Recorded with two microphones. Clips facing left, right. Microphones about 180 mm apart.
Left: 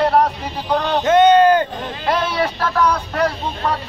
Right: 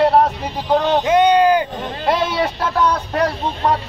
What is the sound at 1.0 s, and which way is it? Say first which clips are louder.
Speech: left 5 dB; 10° right (ahead or behind).